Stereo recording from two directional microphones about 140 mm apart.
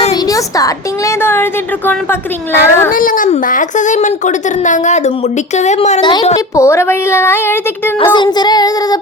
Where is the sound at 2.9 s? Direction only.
75° left (ahead or behind); by 6.0 s 55° left (ahead or behind).